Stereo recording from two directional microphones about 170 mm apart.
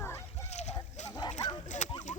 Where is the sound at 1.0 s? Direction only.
25° left (ahead or behind).